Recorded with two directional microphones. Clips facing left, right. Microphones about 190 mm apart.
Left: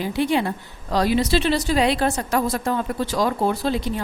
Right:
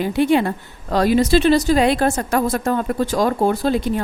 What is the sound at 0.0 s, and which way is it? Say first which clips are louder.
A woman's voice: right 5 dB; 55° right (ahead or behind).